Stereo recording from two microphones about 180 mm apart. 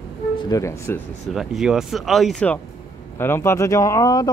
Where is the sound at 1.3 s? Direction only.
5° right (ahead or behind).